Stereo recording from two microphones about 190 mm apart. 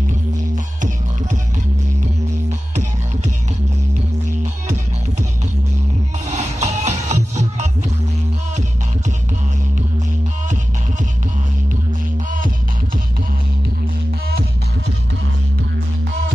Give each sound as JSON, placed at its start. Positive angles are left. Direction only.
{"t": 6.2, "sound": "music", "side_deg": -35}